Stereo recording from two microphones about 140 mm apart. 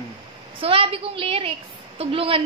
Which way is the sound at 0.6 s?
40° right (ahead or behind).